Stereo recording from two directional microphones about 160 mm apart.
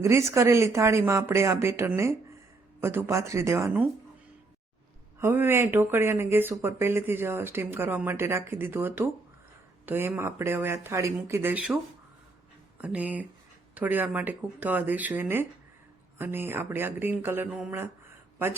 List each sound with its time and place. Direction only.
0.0 s speech: 20° right (ahead or behind)
5.2 s speech: 15° right (ahead or behind)
12.8 s speech: 10° right (ahead or behind)